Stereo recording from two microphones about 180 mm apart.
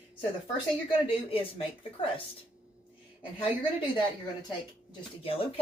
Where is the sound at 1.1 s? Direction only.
30° left (ahead or behind).